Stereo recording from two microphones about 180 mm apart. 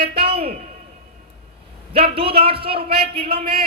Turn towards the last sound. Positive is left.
turn(degrees=-30)  # may be behind; listen again after turning